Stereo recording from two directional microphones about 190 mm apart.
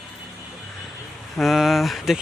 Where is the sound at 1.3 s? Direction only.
Centre (ahead or behind).